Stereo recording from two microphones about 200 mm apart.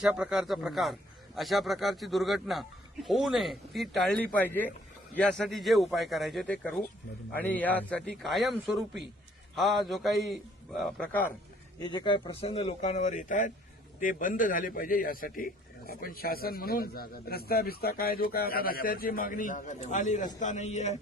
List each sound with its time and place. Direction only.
0.0 s speech: 5° right (ahead or behind)
11.8 s a man's voice: 20° left (ahead or behind)